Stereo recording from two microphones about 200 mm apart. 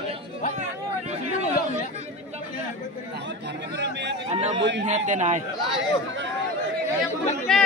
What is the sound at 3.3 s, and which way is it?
Chatter, 60° right (ahead or behind).